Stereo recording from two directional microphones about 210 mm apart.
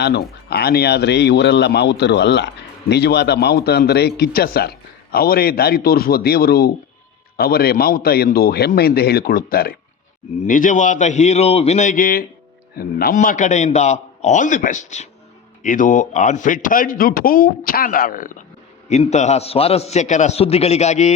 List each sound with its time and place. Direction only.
0.0 s a man's voice: 50° left (ahead or behind); by 21.1 s 30° left (ahead or behind)